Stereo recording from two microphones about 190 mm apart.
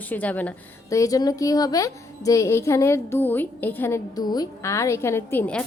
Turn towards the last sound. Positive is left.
turn(degrees=10)  # may be behind; listen again after turning